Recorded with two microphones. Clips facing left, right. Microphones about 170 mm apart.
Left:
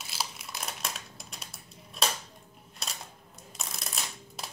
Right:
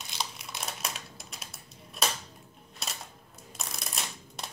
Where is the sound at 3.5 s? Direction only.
Centre (ahead or behind).